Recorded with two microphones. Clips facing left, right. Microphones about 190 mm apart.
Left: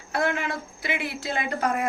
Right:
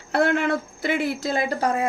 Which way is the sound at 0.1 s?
65° right (ahead or behind).